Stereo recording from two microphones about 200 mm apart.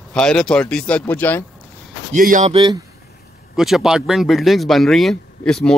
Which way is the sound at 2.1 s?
40° right (ahead or behind).